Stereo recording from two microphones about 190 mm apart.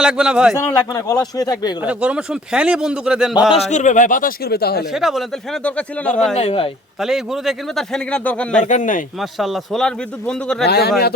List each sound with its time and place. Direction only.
0.0 s speech: 5° right (ahead or behind)
0.5 s a man's voice: 15° left (ahead or behind)
1.8 s speech: 5° right (ahead or behind)
3.7 s speech: 40° left (ahead or behind); by 4.9 s 55° left (ahead or behind)
4.9 s a man's voice: centre (ahead or behind)
6.3 s speech: 30° left (ahead or behind)
7.0 s speech: centre (ahead or behind)
8.6 s speech: 40° left (ahead or behind)
9.4 s speech: centre (ahead or behind)
10.7 s speech: 55° left (ahead or behind)